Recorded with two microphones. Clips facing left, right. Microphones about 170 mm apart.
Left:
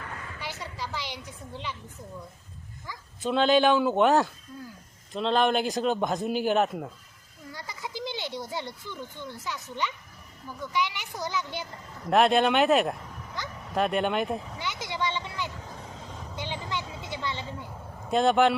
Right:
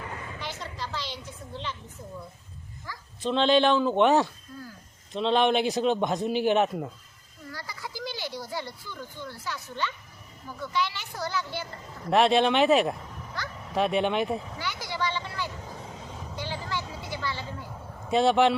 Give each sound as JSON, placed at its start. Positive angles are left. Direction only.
{"t": 0.3, "sound": "a sound", "side_deg": 10}
{"t": 3.2, "sound": "a man's voice", "side_deg": 5}
{"t": 7.5, "sound": "a child's voice", "side_deg": 20}
{"t": 12.1, "sound": "a man's voice", "side_deg": 0}
{"t": 13.4, "sound": "a child's voice", "side_deg": 20}
{"t": 13.7, "sound": "a man's voice", "side_deg": 0}
{"t": 14.6, "sound": "vehicle", "side_deg": 20}
{"t": 18.1, "sound": "a man's voice", "side_deg": 0}